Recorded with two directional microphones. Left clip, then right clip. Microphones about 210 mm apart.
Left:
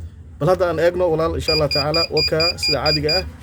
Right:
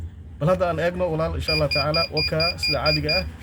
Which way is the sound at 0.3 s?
55° left (ahead or behind).